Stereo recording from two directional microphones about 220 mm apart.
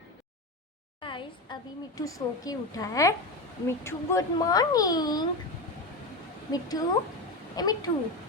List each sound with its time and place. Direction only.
1.0 s a sound: 20° left (ahead or behind)
2.0 s a child's voice: 15° left (ahead or behind)
6.5 s a child's voice: 15° left (ahead or behind)